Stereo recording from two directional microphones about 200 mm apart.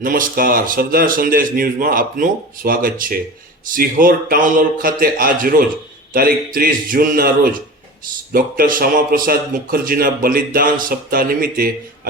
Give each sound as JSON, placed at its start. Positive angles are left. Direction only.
{"t": 0.0, "sound": "speech", "side_deg": -45}